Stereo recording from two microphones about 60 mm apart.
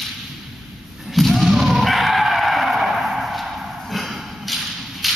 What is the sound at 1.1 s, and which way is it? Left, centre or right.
Skidding, centre.